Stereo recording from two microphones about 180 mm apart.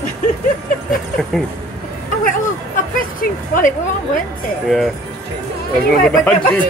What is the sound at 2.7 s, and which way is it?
A woman's voice, 45° left (ahead or behind).